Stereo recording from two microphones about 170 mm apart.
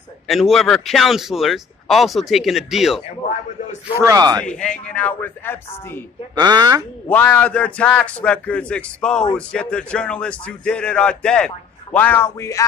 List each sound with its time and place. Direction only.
0.3 s a man's voice: centre (ahead or behind)
4.0 s speech: 20° right (ahead or behind)
4.4 s a man's voice: 5° left (ahead or behind)
6.3 s speech: 25° right (ahead or behind)
7.1 s a man's voice: 10° left (ahead or behind)